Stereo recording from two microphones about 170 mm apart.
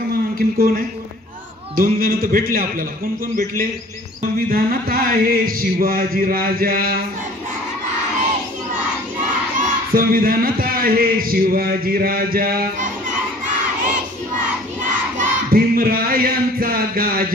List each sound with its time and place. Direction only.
0.1 s a sound: 60° right (ahead or behind)
1.8 s a man's voice: 60° right (ahead or behind)
4.5 s a man's voice: 60° right (ahead or behind)
9.6 s a man's voice: 60° right (ahead or behind)
14.8 s battle cry: 50° right (ahead or behind)